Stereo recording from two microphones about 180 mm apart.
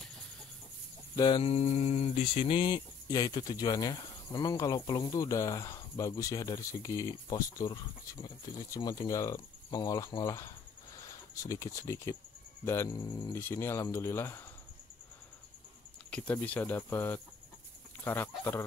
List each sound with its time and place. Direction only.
1.1 s a sound: 20° left (ahead or behind)
1.4 s speech: 35° left (ahead or behind); by 14.4 s 15° left (ahead or behind)
16.1 s speech: 10° left (ahead or behind)